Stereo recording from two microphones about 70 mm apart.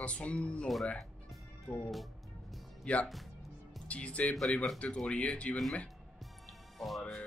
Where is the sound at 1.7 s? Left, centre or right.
Centre.